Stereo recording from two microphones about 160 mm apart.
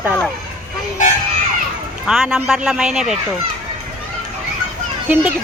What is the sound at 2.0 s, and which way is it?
A man's voice, centre (ahead or behind).